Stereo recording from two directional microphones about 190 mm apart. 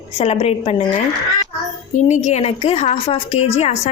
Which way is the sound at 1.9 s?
40° left (ahead or behind).